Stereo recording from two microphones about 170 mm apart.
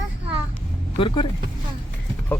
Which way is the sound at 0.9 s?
30° left (ahead or behind).